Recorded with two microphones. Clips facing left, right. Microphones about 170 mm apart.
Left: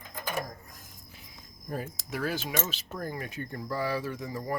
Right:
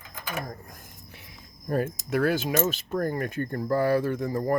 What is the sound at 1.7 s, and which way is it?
Speech, 60° right (ahead or behind).